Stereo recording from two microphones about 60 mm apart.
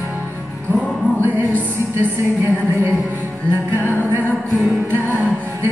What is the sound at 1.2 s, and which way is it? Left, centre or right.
Music, right.